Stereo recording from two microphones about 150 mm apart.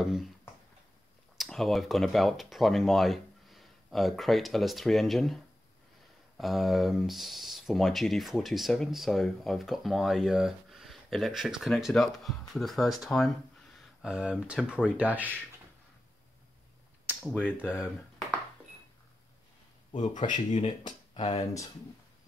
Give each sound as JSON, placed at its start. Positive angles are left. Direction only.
{"t": 0.0, "sound": "speech", "side_deg": 0}
{"t": 1.4, "sound": "speech", "side_deg": 0}
{"t": 17.3, "sound": "speech", "side_deg": 10}
{"t": 19.9, "sound": "speech", "side_deg": 55}